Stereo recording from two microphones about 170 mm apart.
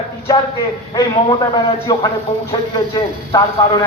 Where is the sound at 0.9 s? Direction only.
25° left (ahead or behind).